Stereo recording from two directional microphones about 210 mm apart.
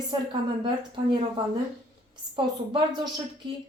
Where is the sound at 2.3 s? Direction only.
20° right (ahead or behind).